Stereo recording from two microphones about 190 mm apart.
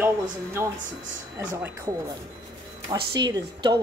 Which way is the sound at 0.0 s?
15° right (ahead or behind).